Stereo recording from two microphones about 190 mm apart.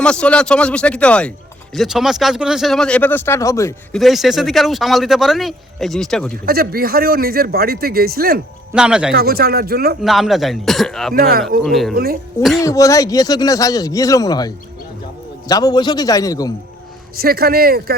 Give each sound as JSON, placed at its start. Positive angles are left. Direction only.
{"t": 0.0, "sound": "speech", "side_deg": 5}
{"t": 3.9, "sound": "speech", "side_deg": 0}
{"t": 6.4, "sound": "a man's voice", "side_deg": -50}
{"t": 8.7, "sound": "speech", "side_deg": -5}
{"t": 9.1, "sound": "speech", "side_deg": -55}
{"t": 10.0, "sound": "speech", "side_deg": 0}
{"t": 11.1, "sound": "a man's voice", "side_deg": -55}
{"t": 11.6, "sound": "speech", "side_deg": 0}
{"t": 12.6, "sound": "a man's voice", "side_deg": 15}
{"t": 17.2, "sound": "a man's voice", "side_deg": -55}